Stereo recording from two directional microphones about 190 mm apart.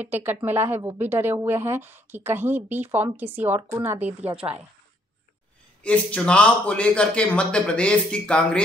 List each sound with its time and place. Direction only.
0.0 s a woman's voice: 10° right (ahead or behind)
5.9 s a man's voice: 5° left (ahead or behind)